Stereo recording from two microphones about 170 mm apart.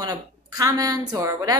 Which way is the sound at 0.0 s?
20° right (ahead or behind).